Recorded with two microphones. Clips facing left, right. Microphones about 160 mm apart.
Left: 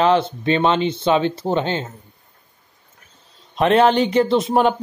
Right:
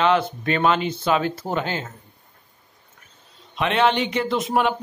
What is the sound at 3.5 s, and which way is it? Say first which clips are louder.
Speech: left 6 dB; 40° left (ahead or behind).